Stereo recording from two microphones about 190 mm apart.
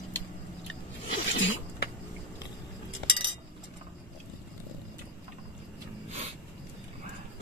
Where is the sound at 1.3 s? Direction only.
75° left (ahead or behind).